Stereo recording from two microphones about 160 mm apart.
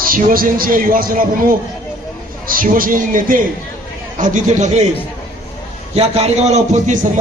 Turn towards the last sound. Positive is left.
turn(degrees=-50)  # may be behind; listen again after turning